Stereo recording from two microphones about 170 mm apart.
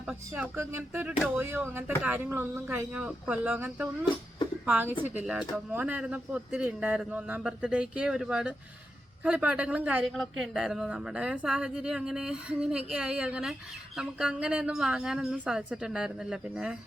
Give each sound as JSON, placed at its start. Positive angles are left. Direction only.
{"t": 0.1, "sound": "a woman's voice", "side_deg": -10}